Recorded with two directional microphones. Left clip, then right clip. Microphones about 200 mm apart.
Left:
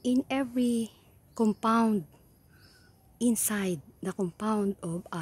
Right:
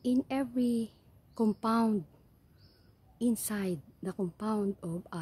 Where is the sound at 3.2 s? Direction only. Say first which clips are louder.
Left 4 dB; 5° left (ahead or behind).